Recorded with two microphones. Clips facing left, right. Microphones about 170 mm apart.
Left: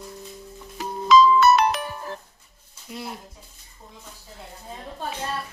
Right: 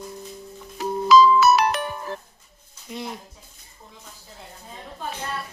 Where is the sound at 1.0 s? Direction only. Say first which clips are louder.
Even; 5° right (ahead or behind).